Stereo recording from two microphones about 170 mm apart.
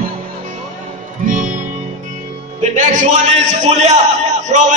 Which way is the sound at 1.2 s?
50° right (ahead or behind).